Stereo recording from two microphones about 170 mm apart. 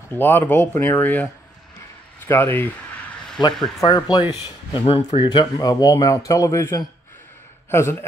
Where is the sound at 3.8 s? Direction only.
25° left (ahead or behind).